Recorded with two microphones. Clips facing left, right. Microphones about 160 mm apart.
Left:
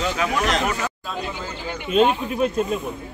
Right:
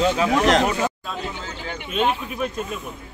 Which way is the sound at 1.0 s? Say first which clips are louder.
Left 1 dB; 5° left (ahead or behind).